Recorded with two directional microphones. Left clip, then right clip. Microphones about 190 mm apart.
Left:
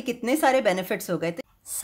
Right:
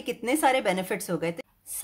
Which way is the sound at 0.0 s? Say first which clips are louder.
Left 2 dB; 15° left (ahead or behind).